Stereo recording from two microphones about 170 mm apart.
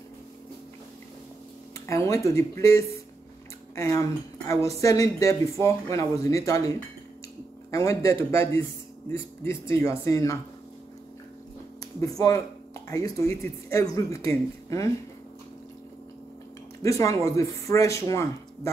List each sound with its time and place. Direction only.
1.9 s speech: 15° left (ahead or behind)
7.7 s speech: 15° left (ahead or behind)
12.0 s speech: 20° left (ahead or behind)
16.8 s speech: 20° left (ahead or behind)